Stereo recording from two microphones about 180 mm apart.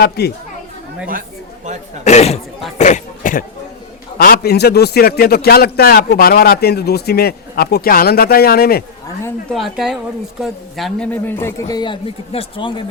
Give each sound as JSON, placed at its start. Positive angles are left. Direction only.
{"t": 0.0, "sound": "a man's voice", "side_deg": 65}
{"t": 2.0, "sound": "speech", "side_deg": 35}
{"t": 2.7, "sound": "a sound", "side_deg": 40}
{"t": 4.2, "sound": "a man's voice", "side_deg": 60}
{"t": 9.5, "sound": "a woman's voice", "side_deg": 0}